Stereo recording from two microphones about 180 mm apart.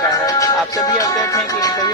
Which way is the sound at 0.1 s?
20° left (ahead or behind).